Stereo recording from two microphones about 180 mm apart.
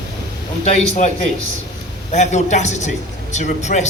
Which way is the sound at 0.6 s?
40° left (ahead or behind).